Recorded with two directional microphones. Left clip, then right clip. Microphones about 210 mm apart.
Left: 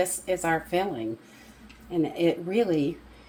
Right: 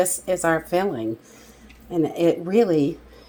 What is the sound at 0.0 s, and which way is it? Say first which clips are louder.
Speech: right 5 dB; 40° right (ahead or behind).